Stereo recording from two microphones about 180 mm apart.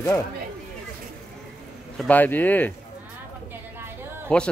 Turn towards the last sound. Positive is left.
turn(degrees=5)  # may be behind; listen again after turning